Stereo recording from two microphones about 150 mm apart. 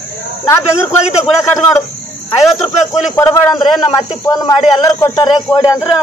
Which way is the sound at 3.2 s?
20° left (ahead or behind).